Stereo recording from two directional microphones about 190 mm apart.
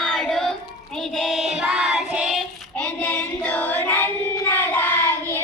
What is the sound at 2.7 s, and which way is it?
Child singing, 10° left (ahead or behind).